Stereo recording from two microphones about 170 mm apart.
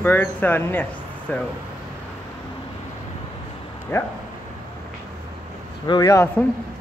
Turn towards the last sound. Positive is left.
turn(degrees=20)  # may be behind; listen again after turning